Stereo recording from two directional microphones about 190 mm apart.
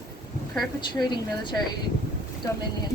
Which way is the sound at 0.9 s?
25° left (ahead or behind).